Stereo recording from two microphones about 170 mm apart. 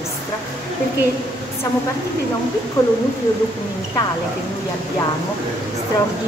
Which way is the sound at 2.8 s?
20° left (ahead or behind).